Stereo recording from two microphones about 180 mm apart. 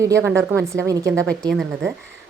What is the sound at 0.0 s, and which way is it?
A woman's voice, 15° right (ahead or behind).